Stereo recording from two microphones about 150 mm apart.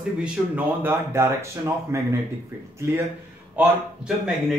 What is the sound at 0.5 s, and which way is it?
Speech, 15° right (ahead or behind).